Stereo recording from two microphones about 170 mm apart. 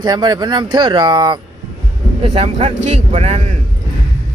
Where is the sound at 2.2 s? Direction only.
35° right (ahead or behind).